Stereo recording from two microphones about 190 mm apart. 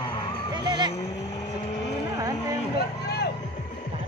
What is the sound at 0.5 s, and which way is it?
Speech, 20° right (ahead or behind).